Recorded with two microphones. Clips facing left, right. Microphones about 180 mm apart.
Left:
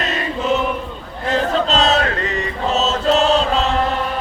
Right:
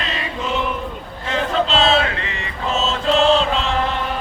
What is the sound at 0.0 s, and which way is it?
Chant, 45° left (ahead or behind).